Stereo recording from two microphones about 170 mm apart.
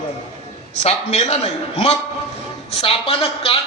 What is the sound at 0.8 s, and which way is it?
A man's voice, 40° left (ahead or behind).